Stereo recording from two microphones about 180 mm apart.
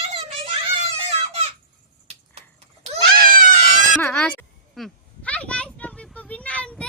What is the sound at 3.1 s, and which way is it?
Screaming, 55° right (ahead or behind).